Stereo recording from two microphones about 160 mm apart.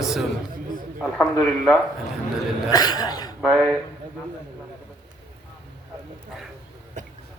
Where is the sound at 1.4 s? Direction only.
Centre (ahead or behind).